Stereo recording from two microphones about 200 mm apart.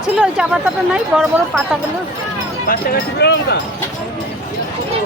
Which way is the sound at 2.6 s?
50° left (ahead or behind).